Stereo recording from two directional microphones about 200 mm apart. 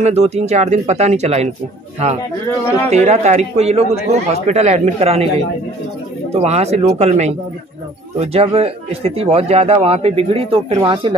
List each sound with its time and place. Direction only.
0.0 s speech: 35° right (ahead or behind)
2.9 s speech: 35° right (ahead or behind)
6.3 s speech: 35° right (ahead or behind)